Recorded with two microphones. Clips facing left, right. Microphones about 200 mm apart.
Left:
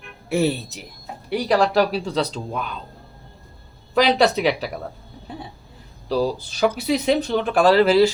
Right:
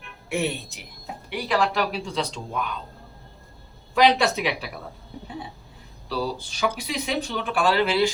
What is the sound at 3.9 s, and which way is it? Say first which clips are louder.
Speech: left 2 dB; 35° left (ahead or behind).